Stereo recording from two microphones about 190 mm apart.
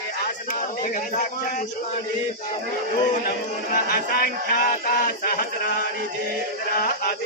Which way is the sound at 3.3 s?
50° left (ahead or behind).